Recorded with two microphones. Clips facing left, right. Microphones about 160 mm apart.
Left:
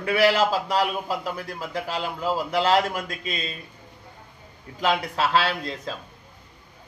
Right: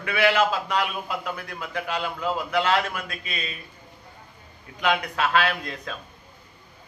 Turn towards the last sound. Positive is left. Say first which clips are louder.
# even
turn(degrees=30)  # may be behind; listen again after turning